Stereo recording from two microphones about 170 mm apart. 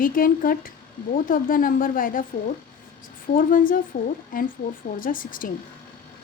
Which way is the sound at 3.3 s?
55° left (ahead or behind).